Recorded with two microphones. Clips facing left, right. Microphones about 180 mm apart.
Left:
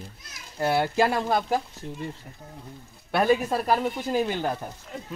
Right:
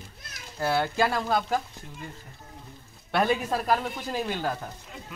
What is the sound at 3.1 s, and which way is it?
Speech, 5° left (ahead or behind).